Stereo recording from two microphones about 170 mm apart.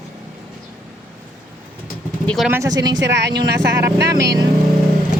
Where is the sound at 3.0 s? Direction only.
90° right.